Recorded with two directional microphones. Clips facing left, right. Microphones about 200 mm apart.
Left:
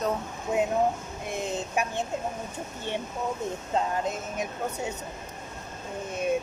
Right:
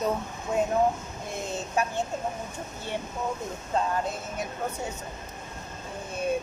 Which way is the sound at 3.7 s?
20° left (ahead or behind).